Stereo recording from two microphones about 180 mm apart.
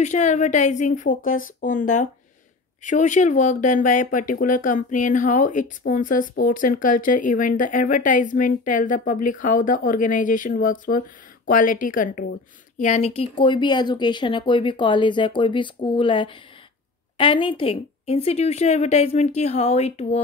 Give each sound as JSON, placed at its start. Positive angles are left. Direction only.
{"t": 0.0, "sound": "a woman's voice", "side_deg": 40}